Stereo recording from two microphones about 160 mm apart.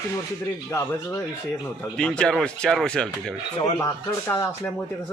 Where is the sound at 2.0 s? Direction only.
5° left (ahead or behind).